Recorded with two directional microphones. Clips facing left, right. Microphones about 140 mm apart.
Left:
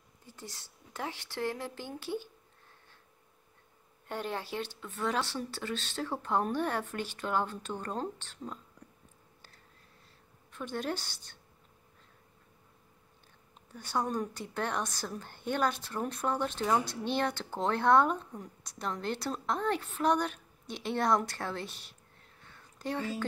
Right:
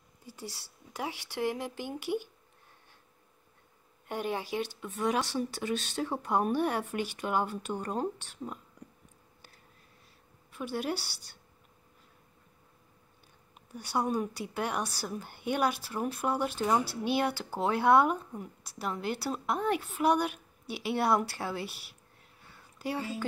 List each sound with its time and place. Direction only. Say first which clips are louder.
0.3 s a woman's voice: right 4 dB; 10° right (ahead or behind)
4.1 s a woman's voice: right 3 dB; 10° right (ahead or behind)
10.5 s a woman's voice: right 2 dB; 10° right (ahead or behind)
13.7 s a woman's voice: right 2 dB; 10° right (ahead or behind)
22.4 s a sound: right 2 dB; 10° right (ahead or behind)